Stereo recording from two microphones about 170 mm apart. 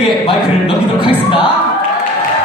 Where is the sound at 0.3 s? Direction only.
30° left (ahead or behind).